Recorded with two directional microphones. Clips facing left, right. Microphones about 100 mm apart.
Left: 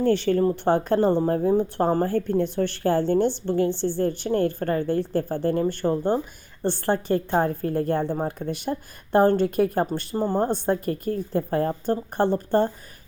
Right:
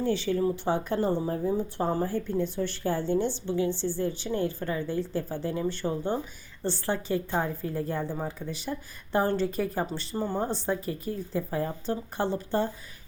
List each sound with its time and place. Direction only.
0.0 s speech: 60° left (ahead or behind)